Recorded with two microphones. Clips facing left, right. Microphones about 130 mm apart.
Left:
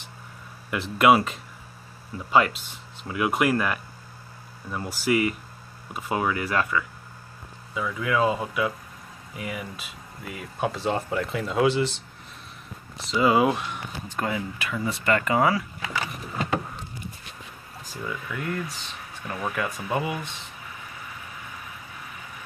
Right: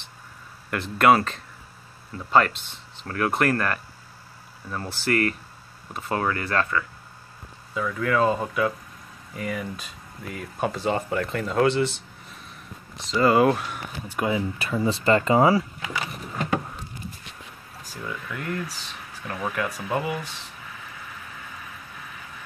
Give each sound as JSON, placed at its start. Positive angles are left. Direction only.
{"t": 0.7, "sound": "speech", "side_deg": 5}
{"t": 13.0, "sound": "speech", "side_deg": 5}
{"t": 14.0, "sound": "speech", "side_deg": -15}
{"t": 14.6, "sound": "speech", "side_deg": -30}
{"t": 17.9, "sound": "speech", "side_deg": 0}